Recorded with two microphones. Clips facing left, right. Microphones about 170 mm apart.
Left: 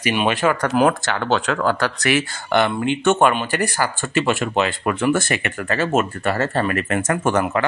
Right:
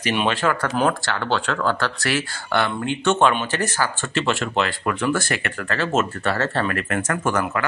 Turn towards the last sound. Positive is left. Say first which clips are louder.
# left 3 dB
turn(degrees=25)  # may be behind; listen again after turning